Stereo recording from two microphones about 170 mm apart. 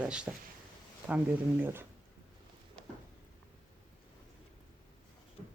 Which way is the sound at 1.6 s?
15° right (ahead or behind).